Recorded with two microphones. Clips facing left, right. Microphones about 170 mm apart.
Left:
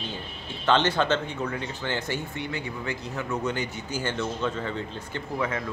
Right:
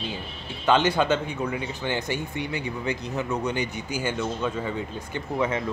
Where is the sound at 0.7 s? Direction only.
10° right (ahead or behind).